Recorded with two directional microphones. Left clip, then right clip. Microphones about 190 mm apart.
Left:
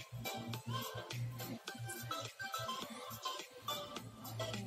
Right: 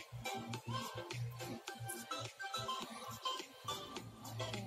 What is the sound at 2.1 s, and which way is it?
Music, 50° left (ahead or behind).